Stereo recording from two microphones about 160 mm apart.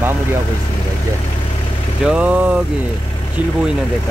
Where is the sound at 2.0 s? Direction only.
5° right (ahead or behind).